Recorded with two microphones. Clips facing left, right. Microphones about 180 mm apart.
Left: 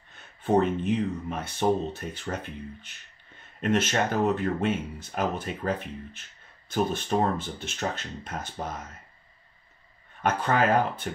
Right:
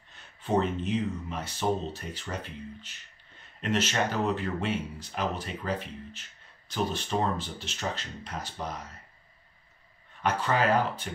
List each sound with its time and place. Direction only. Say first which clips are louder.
0.1 s speech: left 4 dB; 55° left (ahead or behind)
10.2 s speech: left 2 dB; 50° left (ahead or behind)